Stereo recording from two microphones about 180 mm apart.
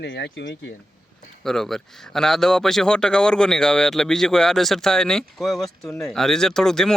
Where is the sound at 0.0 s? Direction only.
75° left (ahead or behind).